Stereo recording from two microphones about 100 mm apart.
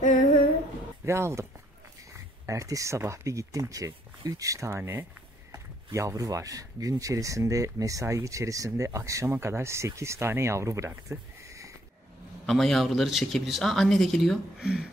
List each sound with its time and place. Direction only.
1.0 s speech: 25° right (ahead or behind)
11.1 s a sound: 30° right (ahead or behind)
12.4 s speech: centre (ahead or behind)